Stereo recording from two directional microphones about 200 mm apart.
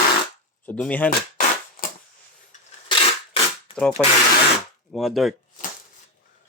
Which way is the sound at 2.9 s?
25° left (ahead or behind).